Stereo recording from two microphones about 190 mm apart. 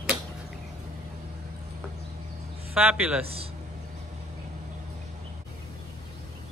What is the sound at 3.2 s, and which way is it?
Speech, 30° right (ahead or behind).